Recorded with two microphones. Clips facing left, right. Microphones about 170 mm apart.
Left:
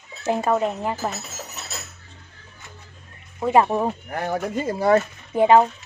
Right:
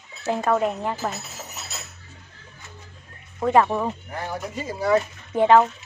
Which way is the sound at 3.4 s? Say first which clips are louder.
Left 1 dB; 15° left (ahead or behind).